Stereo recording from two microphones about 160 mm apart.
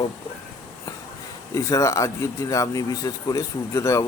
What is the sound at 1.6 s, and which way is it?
A man's voice, 20° left (ahead or behind).